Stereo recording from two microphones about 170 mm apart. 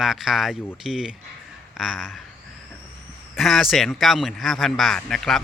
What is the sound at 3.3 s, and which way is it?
Speech, centre (ahead or behind).